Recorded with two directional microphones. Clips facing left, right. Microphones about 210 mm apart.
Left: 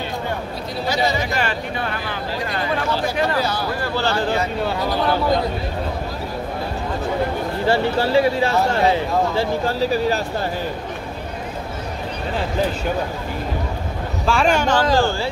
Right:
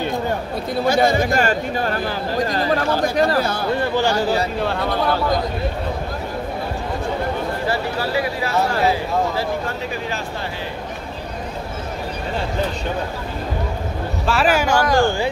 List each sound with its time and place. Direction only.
0.8 s speech: 50° right (ahead or behind)
3.3 s speech: 50° right (ahead or behind)
3.8 s speech: 15° right (ahead or behind)
4.6 s speech: centre (ahead or behind)
7.6 s speech: 30° left (ahead or behind)
14.2 s speech: 5° right (ahead or behind)